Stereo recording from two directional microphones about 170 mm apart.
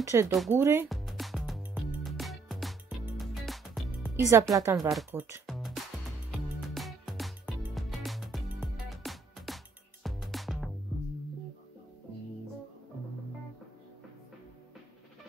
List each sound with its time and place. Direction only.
0.0 s speech: 15° right (ahead or behind)
0.8 s music: centre (ahead or behind)
4.2 s speech: 20° right (ahead or behind)
4.7 s speech: centre (ahead or behind)
5.5 s music: centre (ahead or behind)